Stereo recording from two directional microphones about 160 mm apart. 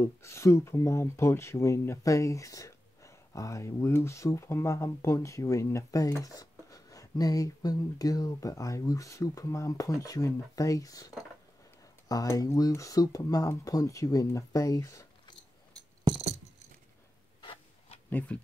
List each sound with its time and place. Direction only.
0.0 s speech: 15° left (ahead or behind)
17.4 s a sound: 35° left (ahead or behind)
18.1 s speech: 10° left (ahead or behind)